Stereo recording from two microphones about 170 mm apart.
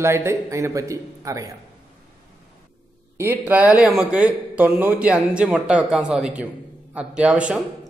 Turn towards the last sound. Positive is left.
turn(degrees=-5)  # may be behind; listen again after turning